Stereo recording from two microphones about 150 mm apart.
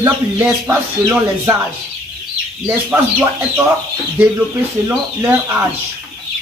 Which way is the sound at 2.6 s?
15° right (ahead or behind).